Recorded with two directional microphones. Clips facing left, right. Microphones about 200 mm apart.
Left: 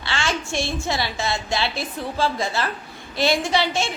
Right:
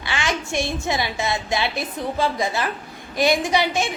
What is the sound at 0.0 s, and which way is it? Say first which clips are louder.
A woman's voice: even; 15° right (ahead or behind).